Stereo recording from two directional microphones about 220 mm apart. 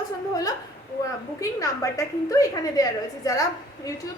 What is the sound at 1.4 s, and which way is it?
A woman's voice, 15° left (ahead or behind).